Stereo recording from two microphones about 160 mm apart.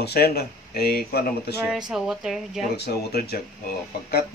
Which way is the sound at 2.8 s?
85° left.